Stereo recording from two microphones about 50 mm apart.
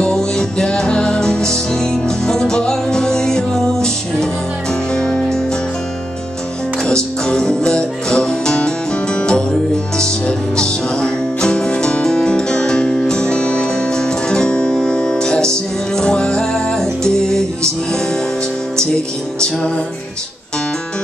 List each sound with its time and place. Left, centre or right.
0.0 s music: centre
7.2 s music: centre